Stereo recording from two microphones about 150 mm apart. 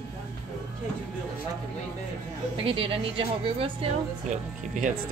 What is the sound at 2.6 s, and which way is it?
A woman's voice, 35° right (ahead or behind).